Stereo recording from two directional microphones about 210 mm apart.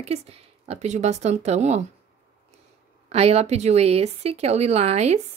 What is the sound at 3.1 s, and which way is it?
Speech, 30° right (ahead or behind).